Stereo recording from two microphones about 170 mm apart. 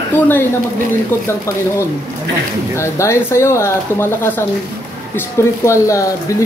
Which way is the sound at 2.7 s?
15° left (ahead or behind).